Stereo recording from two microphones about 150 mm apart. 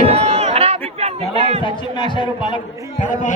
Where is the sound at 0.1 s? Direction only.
45° right (ahead or behind).